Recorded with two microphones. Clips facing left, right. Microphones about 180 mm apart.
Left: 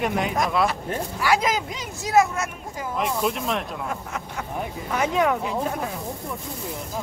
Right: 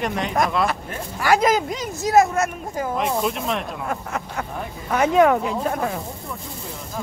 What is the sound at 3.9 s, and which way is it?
Speech, 55° right (ahead or behind).